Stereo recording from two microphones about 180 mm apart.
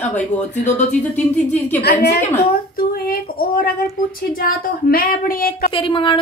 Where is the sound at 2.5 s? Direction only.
55° left (ahead or behind).